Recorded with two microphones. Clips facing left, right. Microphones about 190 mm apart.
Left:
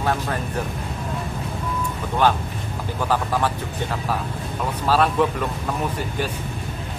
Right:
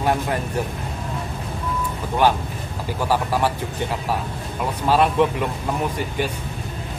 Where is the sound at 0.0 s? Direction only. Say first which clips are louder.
Right 2 dB; 15° right (ahead or behind).